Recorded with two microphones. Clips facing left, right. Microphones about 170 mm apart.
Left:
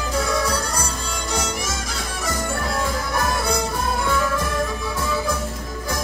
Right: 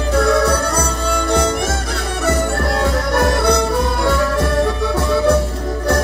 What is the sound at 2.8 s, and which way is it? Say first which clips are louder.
Music: right 9 dB; 70° right (ahead or behind).